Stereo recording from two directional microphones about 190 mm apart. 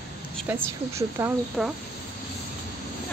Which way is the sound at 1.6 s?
Centre (ahead or behind).